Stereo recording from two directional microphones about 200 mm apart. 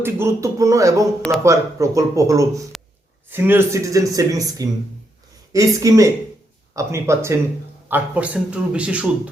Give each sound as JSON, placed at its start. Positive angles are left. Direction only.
{"t": 0.0, "sound": "speech", "side_deg": -15}
{"t": 2.7, "sound": "a sound", "side_deg": 0}
{"t": 3.2, "sound": "speech", "side_deg": -10}